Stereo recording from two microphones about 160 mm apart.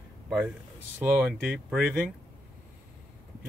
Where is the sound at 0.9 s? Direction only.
10° right (ahead or behind).